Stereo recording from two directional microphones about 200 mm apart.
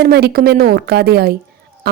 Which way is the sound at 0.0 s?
55° right (ahead or behind).